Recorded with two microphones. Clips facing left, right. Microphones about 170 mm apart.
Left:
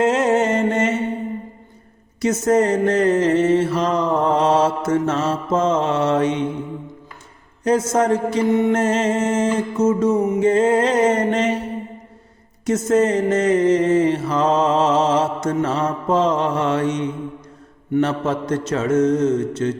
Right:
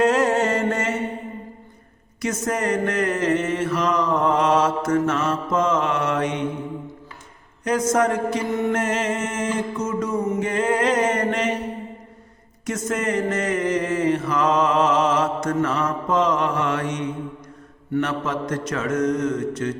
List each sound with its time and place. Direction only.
0.0 s a sound: 20° left (ahead or behind)
2.2 s mantra: 25° left (ahead or behind)
7.6 s mantra: 30° left (ahead or behind)
12.6 s mantra: 30° left (ahead or behind)